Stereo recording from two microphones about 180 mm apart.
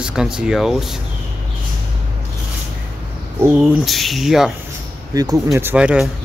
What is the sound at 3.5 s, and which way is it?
Speech, centre (ahead or behind).